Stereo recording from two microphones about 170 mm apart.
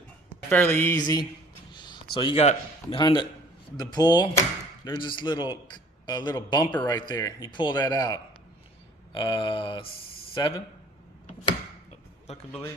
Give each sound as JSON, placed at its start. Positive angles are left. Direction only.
{"t": 0.5, "sound": "speech", "side_deg": 10}
{"t": 0.9, "sound": "a man's voice", "side_deg": 25}